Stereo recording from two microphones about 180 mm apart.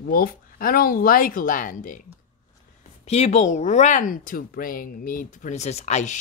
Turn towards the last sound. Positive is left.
turn(degrees=40)  # may be behind; listen again after turning